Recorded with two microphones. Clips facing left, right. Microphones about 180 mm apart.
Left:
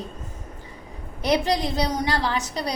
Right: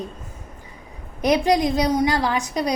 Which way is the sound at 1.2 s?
15° right (ahead or behind).